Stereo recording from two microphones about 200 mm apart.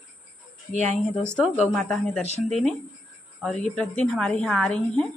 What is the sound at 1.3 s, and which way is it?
Speech, 5° left (ahead or behind).